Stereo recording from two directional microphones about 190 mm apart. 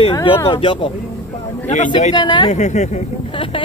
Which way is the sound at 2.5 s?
40° left (ahead or behind).